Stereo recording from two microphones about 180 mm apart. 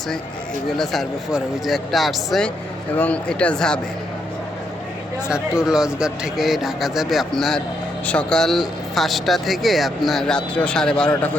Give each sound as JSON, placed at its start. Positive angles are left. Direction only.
{"t": 0.8, "sound": "speech", "side_deg": 0}
{"t": 5.3, "sound": "speech", "side_deg": -5}